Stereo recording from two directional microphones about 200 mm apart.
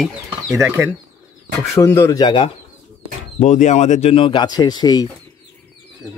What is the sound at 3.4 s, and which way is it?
Speech, 35° left (ahead or behind).